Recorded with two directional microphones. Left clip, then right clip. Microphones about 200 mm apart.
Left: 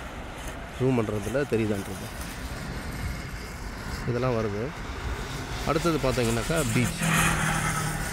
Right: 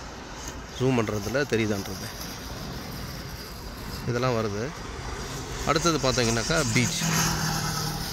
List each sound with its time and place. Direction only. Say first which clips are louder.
0.8 s speech: right 1 dB; centre (ahead or behind)
4.1 s speech: right 1 dB; centre (ahead or behind)
5.7 s speech: right 2 dB; centre (ahead or behind)
7.2 s vehicle: left 5 dB; 25° left (ahead or behind)
7.7 s vehicle: left 1 dB; 15° left (ahead or behind)